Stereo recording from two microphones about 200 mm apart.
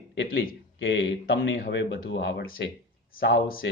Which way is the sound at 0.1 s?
60° left (ahead or behind).